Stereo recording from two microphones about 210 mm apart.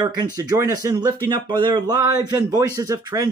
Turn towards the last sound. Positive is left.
turn(degrees=-20)  # may be behind; listen again after turning